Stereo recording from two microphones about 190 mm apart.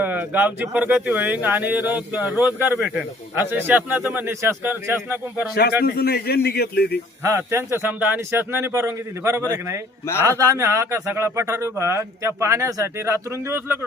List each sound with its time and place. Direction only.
0.0 s speech: 10° right (ahead or behind)
5.8 s speech: 55° left (ahead or behind)
7.3 s speech: 15° right (ahead or behind)